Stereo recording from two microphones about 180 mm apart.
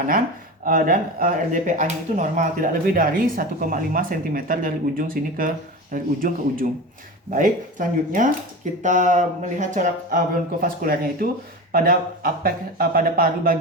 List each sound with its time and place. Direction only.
0.6 s speech: 50° right (ahead or behind)